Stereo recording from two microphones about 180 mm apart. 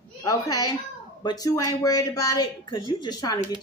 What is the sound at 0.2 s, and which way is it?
A child's voice, 20° left (ahead or behind).